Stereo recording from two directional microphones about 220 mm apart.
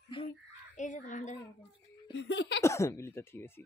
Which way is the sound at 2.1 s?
50° left (ahead or behind).